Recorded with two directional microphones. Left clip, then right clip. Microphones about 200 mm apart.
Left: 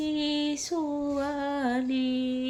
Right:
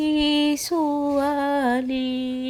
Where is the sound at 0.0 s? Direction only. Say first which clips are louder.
Right 8 dB; 35° right (ahead or behind).